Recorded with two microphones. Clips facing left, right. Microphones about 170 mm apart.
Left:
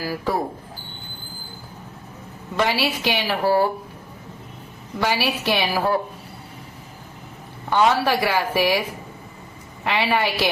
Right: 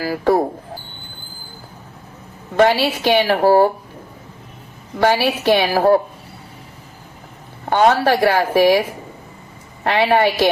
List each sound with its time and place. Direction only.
0.0 s speech: 60° right (ahead or behind)
2.6 s speech: 55° right (ahead or behind)
4.9 s speech: 55° right (ahead or behind)
7.6 s speech: 50° right (ahead or behind)
9.8 s speech: 55° right (ahead or behind)